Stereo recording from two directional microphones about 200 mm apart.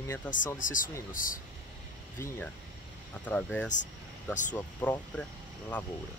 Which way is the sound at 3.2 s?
5° left (ahead or behind).